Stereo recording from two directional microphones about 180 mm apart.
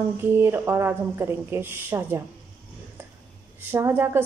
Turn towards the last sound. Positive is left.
turn(degrees=-10)  # may be behind; listen again after turning